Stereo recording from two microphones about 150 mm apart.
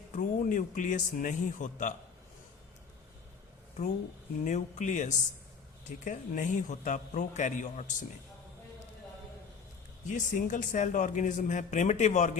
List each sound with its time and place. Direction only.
0.1 s speech: 60° left (ahead or behind)
4.4 s speech: 55° left (ahead or behind)
10.1 s speech: 60° left (ahead or behind)